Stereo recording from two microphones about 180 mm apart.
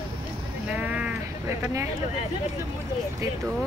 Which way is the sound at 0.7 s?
10° right (ahead or behind).